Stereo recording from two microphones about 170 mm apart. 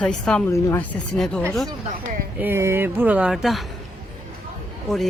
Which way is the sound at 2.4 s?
15° right (ahead or behind).